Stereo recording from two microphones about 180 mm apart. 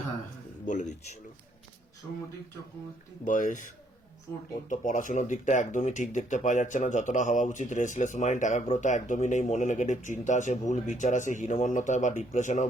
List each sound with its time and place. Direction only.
0.6 s speech: 45° left (ahead or behind)
3.2 s speech: 45° left (ahead or behind)
4.7 s speech: 45° left (ahead or behind)